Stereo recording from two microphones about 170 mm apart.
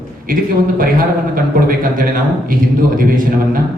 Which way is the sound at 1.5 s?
55° right (ahead or behind).